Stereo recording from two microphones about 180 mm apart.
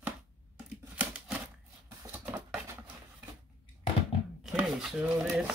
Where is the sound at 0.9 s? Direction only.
5° right (ahead or behind).